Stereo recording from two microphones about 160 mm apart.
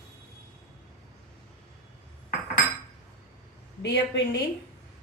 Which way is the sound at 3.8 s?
90° left.